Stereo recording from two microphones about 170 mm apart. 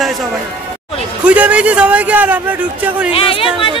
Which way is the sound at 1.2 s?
10° right (ahead or behind).